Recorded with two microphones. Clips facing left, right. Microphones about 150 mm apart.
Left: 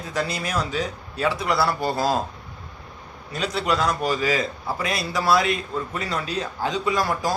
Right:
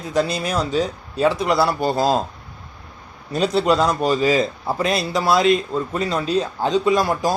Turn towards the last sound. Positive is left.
turn(degrees=-20)  # may be behind; listen again after turning